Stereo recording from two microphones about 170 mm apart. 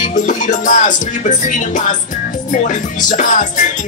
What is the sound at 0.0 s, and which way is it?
Speech, 45° left (ahead or behind).